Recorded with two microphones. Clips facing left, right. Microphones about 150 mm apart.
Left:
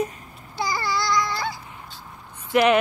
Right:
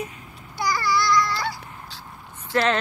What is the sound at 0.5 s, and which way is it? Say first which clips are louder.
Babbling: right 2 dB; 25° left (ahead or behind).